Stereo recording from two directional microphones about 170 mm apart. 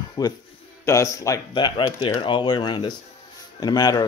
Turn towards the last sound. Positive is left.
turn(degrees=20)  # may be behind; listen again after turning